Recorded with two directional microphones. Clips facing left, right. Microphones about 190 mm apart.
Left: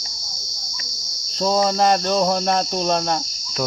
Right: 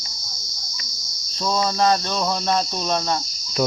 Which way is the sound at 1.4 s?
30° left (ahead or behind).